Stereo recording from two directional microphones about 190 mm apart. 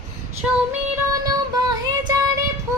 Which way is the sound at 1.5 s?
20° right (ahead or behind).